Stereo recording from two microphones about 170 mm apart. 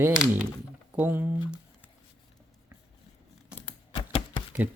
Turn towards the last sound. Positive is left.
turn(degrees=-5)  # may be behind; listen again after turning